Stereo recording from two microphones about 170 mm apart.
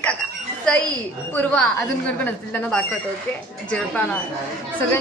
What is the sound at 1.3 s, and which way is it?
A woman's voice, 5° left (ahead or behind).